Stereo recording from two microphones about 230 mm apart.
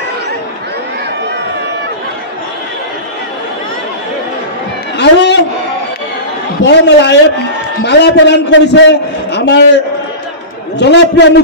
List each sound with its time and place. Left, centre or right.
4.9 s a sound: left
6.6 s a man's voice: left
10.8 s a man's voice: left